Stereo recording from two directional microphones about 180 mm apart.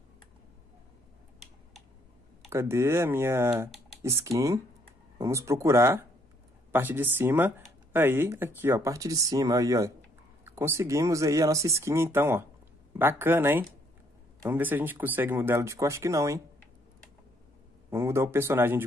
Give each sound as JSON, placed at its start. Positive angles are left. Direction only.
{"t": 2.5, "sound": "speech", "side_deg": -15}
{"t": 17.8, "sound": "speech", "side_deg": -15}